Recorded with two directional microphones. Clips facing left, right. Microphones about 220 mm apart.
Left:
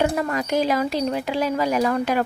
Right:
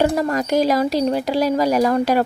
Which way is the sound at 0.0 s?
40° right (ahead or behind).